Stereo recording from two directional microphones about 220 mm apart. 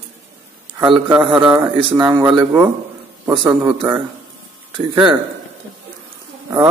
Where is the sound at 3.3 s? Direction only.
20° right (ahead or behind).